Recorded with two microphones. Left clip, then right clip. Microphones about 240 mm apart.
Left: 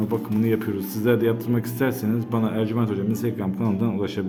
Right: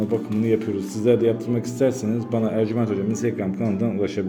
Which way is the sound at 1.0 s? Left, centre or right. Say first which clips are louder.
Right 2 dB; centre.